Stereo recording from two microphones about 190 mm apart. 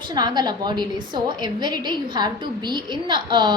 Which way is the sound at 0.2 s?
20° right (ahead or behind).